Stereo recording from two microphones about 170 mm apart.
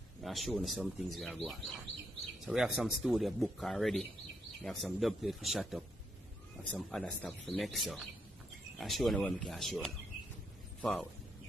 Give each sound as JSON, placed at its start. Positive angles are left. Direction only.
{"t": 0.2, "sound": "speech", "side_deg": 0}